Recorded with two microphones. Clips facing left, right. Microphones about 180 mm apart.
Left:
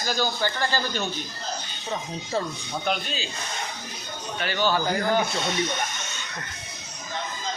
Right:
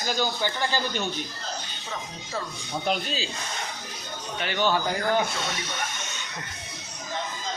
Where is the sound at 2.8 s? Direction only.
30° right (ahead or behind).